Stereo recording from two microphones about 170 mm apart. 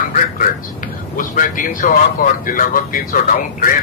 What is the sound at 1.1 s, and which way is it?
Speech, 50° left (ahead or behind).